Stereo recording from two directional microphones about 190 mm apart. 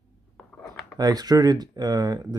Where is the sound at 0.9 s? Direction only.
20° right (ahead or behind).